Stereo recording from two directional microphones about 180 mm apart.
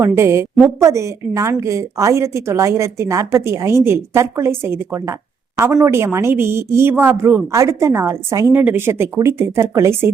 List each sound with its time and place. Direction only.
0.0 s a woman's voice: 15° right (ahead or behind)